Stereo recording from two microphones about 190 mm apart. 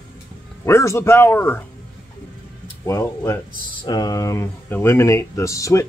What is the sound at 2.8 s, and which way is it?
Speech, 15° left (ahead or behind).